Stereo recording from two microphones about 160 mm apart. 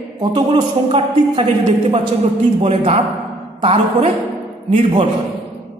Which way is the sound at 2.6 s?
40° right (ahead or behind).